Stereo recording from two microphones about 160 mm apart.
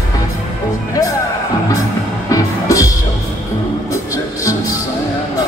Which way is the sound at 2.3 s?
20° left (ahead or behind).